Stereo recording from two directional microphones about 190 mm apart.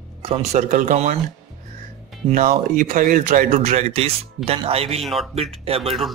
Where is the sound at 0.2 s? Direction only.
35° right (ahead or behind).